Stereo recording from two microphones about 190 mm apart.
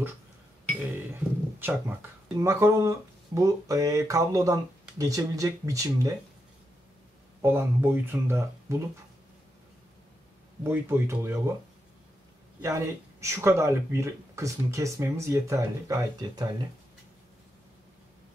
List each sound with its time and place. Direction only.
1.6 s speech: 10° right (ahead or behind)
7.4 s speech: 10° right (ahead or behind)
10.6 s speech: 10° right (ahead or behind)
12.6 s speech: 15° right (ahead or behind)